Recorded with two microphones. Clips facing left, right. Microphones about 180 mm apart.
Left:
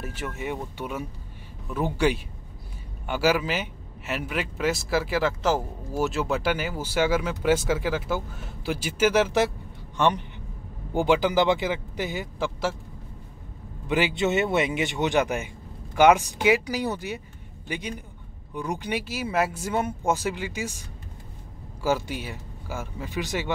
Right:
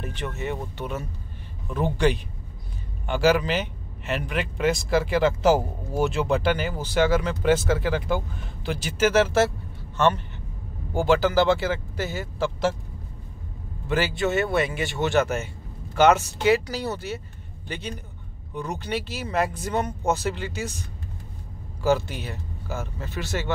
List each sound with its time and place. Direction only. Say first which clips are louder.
0.0 s a man's voice: right 1 dB; 5° left (ahead or behind)
13.8 s speech: even; 15° left (ahead or behind)
21.8 s speech: right 3 dB; 10° left (ahead or behind)